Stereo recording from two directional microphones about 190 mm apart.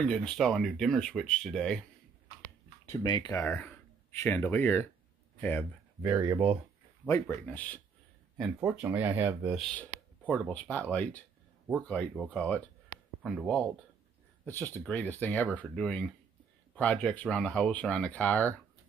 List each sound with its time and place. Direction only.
0.0 s speech: 5° left (ahead or behind)
2.9 s speech: 25° left (ahead or behind)
6.0 s speech: 20° right (ahead or behind)
7.1 s speech: 10° left (ahead or behind)
8.5 s speech: 10° right (ahead or behind)
9.6 s a sound: 10° left (ahead or behind)
10.5 s speech: 5° left (ahead or behind)
12.1 s speech: 5° right (ahead or behind)
12.4 s speech: 5° left (ahead or behind)
13.2 s speech: 5° right (ahead or behind)
14.4 s speech: 10° left (ahead or behind)